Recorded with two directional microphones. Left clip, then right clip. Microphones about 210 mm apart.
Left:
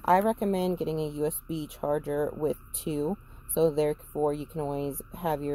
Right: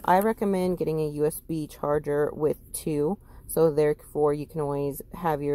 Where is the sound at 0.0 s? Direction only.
20° right (ahead or behind).